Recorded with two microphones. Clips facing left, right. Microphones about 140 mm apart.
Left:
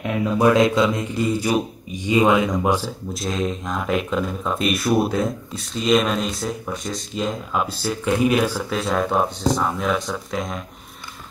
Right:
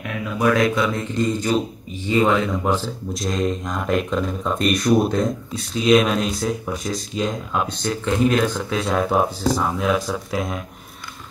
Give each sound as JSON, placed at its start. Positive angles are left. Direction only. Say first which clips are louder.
{"t": 0.0, "sound": "speech", "louder": "left 3 dB", "side_deg": 25}
{"t": 3.1, "sound": "speech", "louder": "right 2 dB", "side_deg": 0}